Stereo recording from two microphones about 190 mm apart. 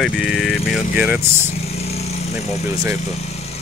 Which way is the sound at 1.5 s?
35° left (ahead or behind).